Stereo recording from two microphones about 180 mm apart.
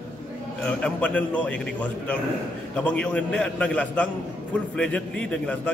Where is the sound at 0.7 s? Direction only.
5° left (ahead or behind).